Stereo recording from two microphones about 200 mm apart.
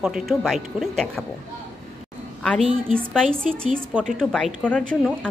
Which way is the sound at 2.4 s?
5° left (ahead or behind).